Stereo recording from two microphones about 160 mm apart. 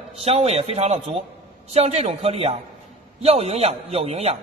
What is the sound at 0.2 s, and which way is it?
A man's voice, 40° right (ahead or behind).